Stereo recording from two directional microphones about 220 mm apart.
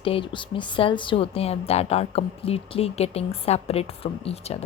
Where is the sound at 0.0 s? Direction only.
25° left (ahead or behind).